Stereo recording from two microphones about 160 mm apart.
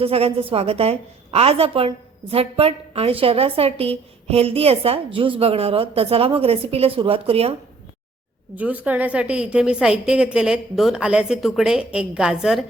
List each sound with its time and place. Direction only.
0.0 s a woman's voice: 35° right (ahead or behind)
8.5 s a woman's voice: 10° right (ahead or behind)